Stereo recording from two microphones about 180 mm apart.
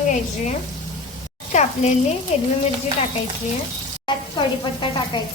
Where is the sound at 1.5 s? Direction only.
40° left (ahead or behind).